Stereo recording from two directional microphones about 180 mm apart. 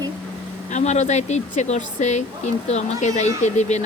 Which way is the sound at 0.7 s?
40° left (ahead or behind).